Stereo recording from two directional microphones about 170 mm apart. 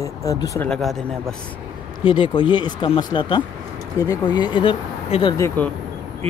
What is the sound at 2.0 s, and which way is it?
Speech, 30° left (ahead or behind).